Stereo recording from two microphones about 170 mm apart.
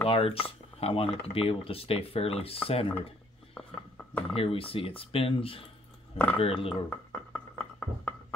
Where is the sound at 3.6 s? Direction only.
5° left (ahead or behind).